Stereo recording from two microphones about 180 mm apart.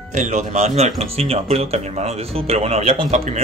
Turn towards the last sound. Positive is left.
turn(degrees=-35)  # may be behind; listen again after turning